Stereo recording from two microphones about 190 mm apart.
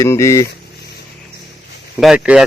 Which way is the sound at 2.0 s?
5° right (ahead or behind).